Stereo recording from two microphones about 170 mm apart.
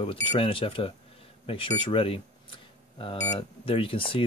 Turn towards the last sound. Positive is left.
turn(degrees=30)  # may be behind; listen again after turning